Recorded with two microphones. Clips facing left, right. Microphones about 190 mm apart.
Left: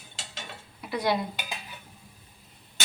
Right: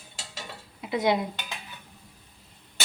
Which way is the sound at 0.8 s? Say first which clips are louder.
Right 3 dB; 20° right (ahead or behind).